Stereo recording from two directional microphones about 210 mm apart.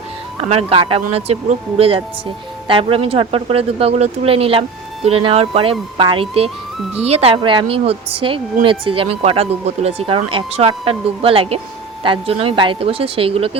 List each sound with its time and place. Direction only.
0.4 s a woman's voice: 30° right (ahead or behind)